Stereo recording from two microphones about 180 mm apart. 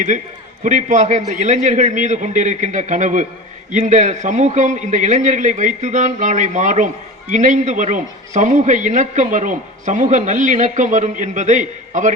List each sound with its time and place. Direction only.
0.6 s a man's voice: 45° right (ahead or behind)